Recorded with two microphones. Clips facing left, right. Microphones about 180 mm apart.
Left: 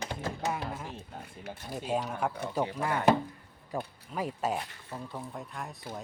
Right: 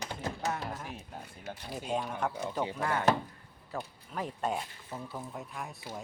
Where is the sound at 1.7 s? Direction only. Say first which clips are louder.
Left 2 dB; centre (ahead or behind).